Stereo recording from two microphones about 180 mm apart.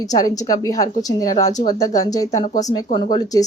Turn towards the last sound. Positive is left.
turn(degrees=25)  # may be behind; listen again after turning